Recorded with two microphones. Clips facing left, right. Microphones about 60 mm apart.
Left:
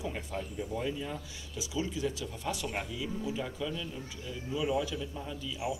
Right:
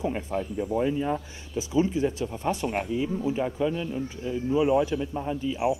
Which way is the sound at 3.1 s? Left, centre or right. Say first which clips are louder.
Right 8 dB; right.